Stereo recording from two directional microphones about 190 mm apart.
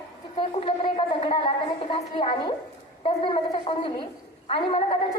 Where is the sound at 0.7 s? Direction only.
30° left (ahead or behind).